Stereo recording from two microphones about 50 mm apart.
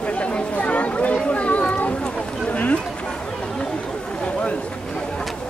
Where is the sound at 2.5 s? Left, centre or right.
Left.